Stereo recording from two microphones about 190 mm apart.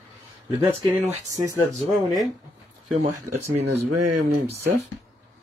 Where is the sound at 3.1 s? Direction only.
15° right (ahead or behind).